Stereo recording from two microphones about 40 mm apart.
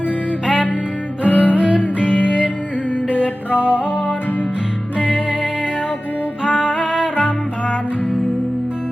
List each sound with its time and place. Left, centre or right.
1.2 s music: right
3.5 s music: left
4.9 s music: right
6.4 s music: centre